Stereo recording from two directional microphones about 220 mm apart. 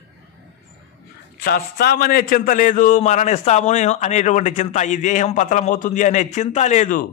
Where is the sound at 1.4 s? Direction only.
45° left (ahead or behind).